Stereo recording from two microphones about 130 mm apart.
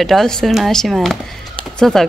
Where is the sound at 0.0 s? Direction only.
5° left (ahead or behind).